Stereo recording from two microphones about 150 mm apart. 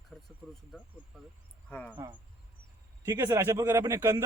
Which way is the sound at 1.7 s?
10° left (ahead or behind).